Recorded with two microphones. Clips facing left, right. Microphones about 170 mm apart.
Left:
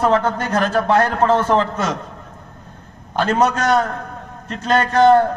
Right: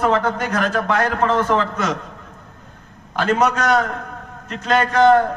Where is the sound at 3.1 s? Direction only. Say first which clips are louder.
Left 1 dB; 30° left (ahead or behind).